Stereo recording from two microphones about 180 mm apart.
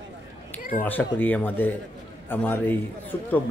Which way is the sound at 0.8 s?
10° left (ahead or behind).